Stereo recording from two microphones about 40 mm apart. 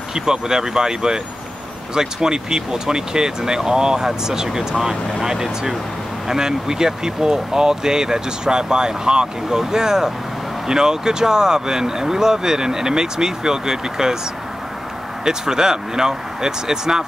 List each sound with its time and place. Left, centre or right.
0.1 s speech: centre
15.2 s speech: centre